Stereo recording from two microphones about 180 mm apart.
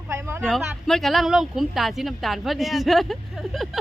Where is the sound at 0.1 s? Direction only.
10° right (ahead or behind).